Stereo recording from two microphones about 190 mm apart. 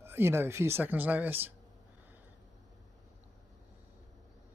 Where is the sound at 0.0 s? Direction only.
10° right (ahead or behind).